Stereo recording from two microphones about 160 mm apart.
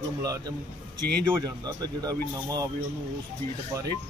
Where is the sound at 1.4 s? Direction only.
25° right (ahead or behind).